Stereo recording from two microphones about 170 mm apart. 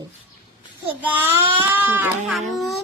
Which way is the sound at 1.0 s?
10° right (ahead or behind).